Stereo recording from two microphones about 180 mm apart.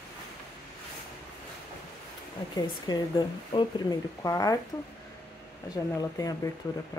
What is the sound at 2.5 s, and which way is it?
Speech, 25° left (ahead or behind).